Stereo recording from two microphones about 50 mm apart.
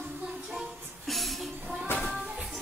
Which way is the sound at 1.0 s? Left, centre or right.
Centre.